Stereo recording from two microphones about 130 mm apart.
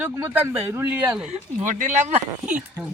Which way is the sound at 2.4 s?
10° right (ahead or behind).